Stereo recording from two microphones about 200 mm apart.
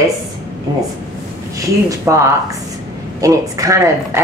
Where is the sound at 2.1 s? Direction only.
15° right (ahead or behind).